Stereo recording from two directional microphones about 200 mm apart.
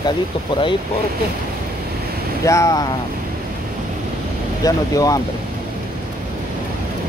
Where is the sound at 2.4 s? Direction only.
15° left (ahead or behind).